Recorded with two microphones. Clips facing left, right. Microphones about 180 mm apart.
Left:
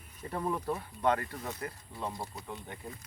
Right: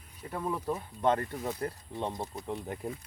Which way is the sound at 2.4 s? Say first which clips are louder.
Right 7 dB; 35° right (ahead or behind).